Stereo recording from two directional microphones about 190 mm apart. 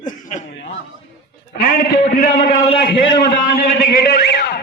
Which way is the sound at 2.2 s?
50° left (ahead or behind).